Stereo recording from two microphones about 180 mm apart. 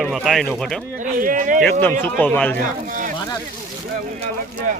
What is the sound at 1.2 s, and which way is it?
Speech, 50° right (ahead or behind).